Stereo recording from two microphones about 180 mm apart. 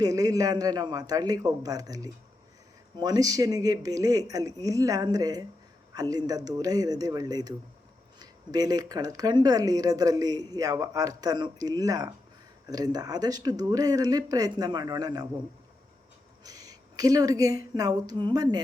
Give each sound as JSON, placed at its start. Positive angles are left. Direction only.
{"t": 0.0, "sound": "speech", "side_deg": -20}
{"t": 16.4, "sound": "a woman's voice", "side_deg": -20}